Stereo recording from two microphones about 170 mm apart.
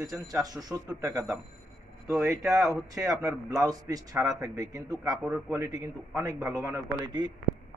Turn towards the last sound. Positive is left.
turn(degrees=-25)  # may be behind; listen again after turning